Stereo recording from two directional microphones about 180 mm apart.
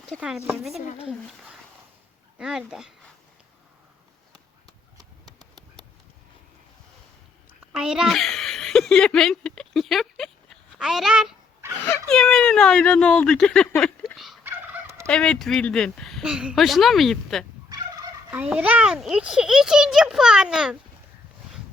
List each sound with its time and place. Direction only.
0.1 s a child's voice: 5° right (ahead or behind)
2.4 s a child's voice: centre (ahead or behind)
7.8 s speech: 5° right (ahead or behind)
14.4 s fowl: 15° right (ahead or behind)
15.0 s a child's voice: 5° left (ahead or behind)
17.7 s turkey: 20° right (ahead or behind)
18.3 s a child's voice: 5° right (ahead or behind)